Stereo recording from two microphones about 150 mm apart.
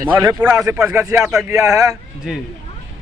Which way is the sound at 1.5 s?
20° right (ahead or behind).